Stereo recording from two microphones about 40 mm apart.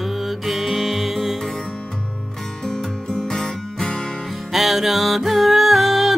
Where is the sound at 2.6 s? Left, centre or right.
Centre.